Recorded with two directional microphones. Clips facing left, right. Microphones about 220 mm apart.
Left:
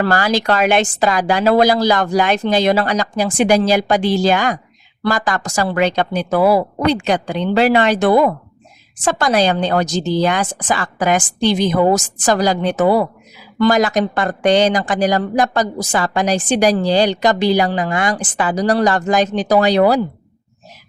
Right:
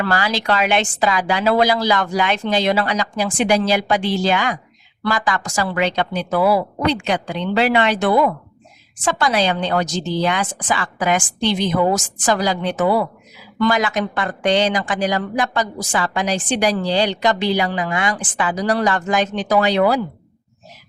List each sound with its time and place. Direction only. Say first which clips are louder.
0.0 s a woman's voice: left 4 dB; 45° left (ahead or behind)